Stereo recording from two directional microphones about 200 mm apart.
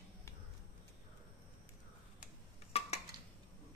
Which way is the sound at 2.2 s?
35° left (ahead or behind).